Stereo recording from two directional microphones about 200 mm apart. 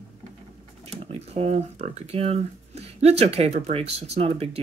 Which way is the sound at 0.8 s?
30° right (ahead or behind).